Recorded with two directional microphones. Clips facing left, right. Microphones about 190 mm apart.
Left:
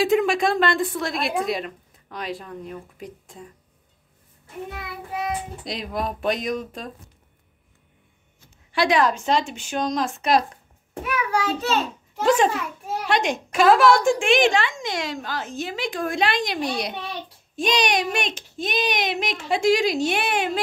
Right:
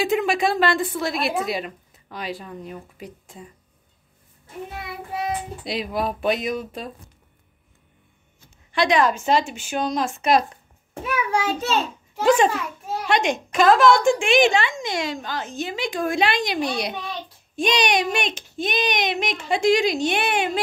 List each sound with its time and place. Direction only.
0.0 s speech: centre (ahead or behind)
5.6 s speech: 5° right (ahead or behind)
8.7 s speech: 5° left (ahead or behind)
11.1 s a child's voice: 30° right (ahead or behind)
12.2 s speech: centre (ahead or behind)